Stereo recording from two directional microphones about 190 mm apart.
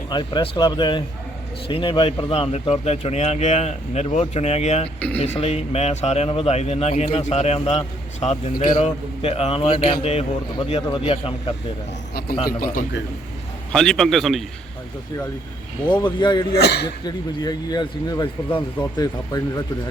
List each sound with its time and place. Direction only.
0.1 s a man's voice: 25° left (ahead or behind)
12.5 s a man's voice: 50° left (ahead or behind)
13.7 s a man's voice: centre (ahead or behind)
16.0 s speech: 25° left (ahead or behind)
16.6 s speech: 60° left (ahead or behind)
17.4 s speech: 20° left (ahead or behind)